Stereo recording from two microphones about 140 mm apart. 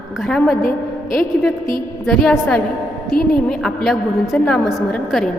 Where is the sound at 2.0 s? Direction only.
5° left (ahead or behind).